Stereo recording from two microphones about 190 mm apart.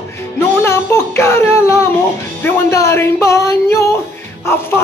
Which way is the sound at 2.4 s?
15° left (ahead or behind).